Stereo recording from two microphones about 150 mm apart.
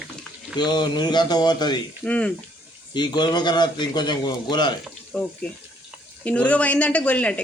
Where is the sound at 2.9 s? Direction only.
30° left (ahead or behind).